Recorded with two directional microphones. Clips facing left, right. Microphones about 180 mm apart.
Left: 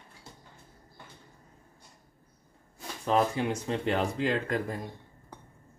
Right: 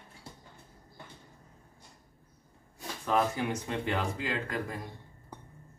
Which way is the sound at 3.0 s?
30° left (ahead or behind).